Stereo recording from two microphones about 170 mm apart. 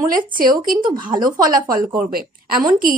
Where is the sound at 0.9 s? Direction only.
25° right (ahead or behind).